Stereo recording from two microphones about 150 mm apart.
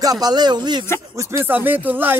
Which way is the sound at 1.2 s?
15° right (ahead or behind).